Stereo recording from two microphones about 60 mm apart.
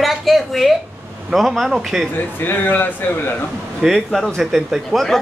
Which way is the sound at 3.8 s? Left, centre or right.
Centre.